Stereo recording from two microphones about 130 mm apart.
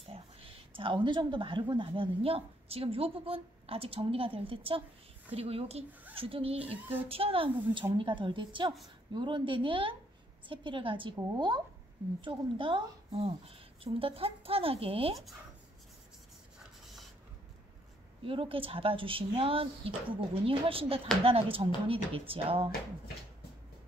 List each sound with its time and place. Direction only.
0.0 s a woman's voice: 45° right (ahead or behind)
18.2 s a woman's voice: 45° right (ahead or behind)